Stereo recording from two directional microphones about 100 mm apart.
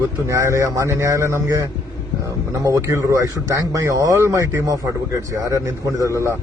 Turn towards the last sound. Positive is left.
turn(degrees=-35)  # may be behind; listen again after turning